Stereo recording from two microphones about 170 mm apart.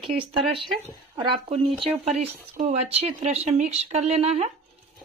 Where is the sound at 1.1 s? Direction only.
30° right (ahead or behind).